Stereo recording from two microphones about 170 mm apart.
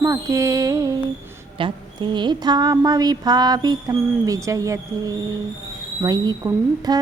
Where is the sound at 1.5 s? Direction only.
30° right (ahead or behind).